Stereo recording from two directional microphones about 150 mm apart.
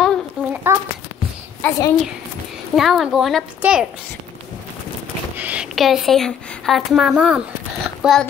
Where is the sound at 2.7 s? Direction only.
Centre (ahead or behind).